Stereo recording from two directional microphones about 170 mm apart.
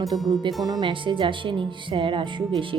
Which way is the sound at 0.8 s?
30° right (ahead or behind).